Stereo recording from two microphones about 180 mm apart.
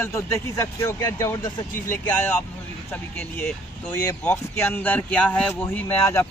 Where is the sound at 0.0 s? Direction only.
15° left (ahead or behind).